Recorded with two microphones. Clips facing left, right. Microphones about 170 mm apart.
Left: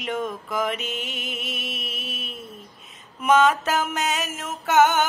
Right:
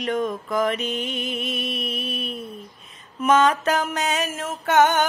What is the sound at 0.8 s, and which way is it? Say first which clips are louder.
Mantra: right 5 dB; 50° right (ahead or behind).